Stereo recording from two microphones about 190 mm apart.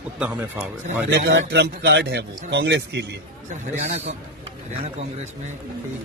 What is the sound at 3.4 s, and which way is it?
Speech, 40° right (ahead or behind).